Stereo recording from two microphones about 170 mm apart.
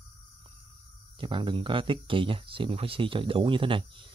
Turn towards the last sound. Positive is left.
turn(degrees=-30)  # may be behind; listen again after turning